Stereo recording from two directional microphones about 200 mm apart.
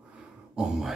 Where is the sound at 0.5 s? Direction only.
5° right (ahead or behind).